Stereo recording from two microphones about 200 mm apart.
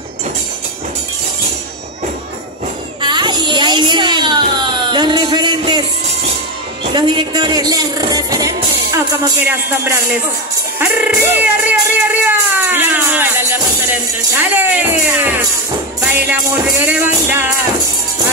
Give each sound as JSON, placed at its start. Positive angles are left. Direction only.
{"t": 3.0, "sound": "a sound", "side_deg": -20}
{"t": 6.8, "sound": "speech", "side_deg": -25}
{"t": 14.4, "sound": "speech", "side_deg": -10}
{"t": 16.8, "sound": "speech", "side_deg": -10}